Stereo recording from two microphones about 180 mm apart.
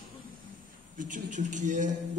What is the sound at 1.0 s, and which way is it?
Speech, 45° right (ahead or behind).